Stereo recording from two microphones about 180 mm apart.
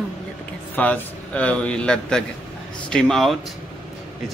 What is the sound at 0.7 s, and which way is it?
Speech, 10° left (ahead or behind).